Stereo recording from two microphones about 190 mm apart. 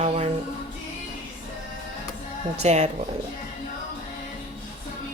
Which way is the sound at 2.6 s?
35° right (ahead or behind).